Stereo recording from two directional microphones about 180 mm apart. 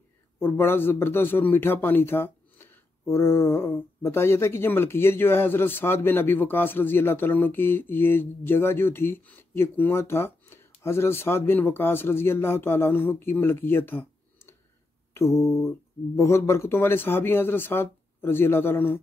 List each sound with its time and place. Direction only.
0.4 s a man's voice: 10° left (ahead or behind)